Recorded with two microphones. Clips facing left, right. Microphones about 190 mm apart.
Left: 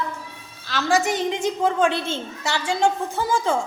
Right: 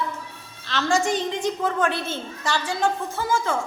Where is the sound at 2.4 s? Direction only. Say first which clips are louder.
Left 2 dB; 10° left (ahead or behind).